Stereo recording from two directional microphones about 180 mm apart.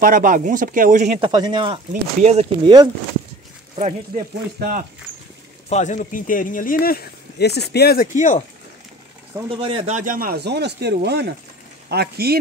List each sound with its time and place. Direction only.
0.0 s speech: 50° right (ahead or behind)
1.2 s speech: 25° right (ahead or behind)
3.7 s speech: 40° right (ahead or behind)
4.6 s speech: 50° right (ahead or behind)
5.7 s speech: 40° left (ahead or behind)
9.5 s speech: 30° right (ahead or behind)
9.9 s speech: 50° right (ahead or behind)